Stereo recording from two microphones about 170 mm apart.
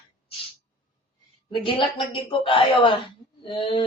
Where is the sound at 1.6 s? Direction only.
30° left (ahead or behind).